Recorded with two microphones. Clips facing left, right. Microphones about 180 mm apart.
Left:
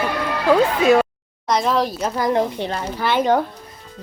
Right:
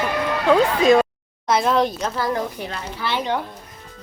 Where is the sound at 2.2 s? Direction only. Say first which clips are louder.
Left 6 dB; 25° left (ahead or behind).